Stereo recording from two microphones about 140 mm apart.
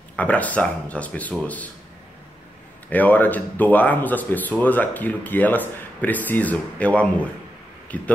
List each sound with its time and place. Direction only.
0.1 s speech: 10° left (ahead or behind)
2.9 s speech: 10° left (ahead or behind)